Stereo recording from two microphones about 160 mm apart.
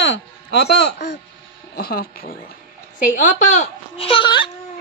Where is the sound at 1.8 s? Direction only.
70° left (ahead or behind).